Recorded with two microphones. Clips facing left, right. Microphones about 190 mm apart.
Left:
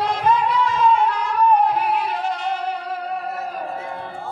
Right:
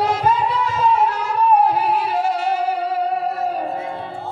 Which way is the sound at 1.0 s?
30° right (ahead or behind).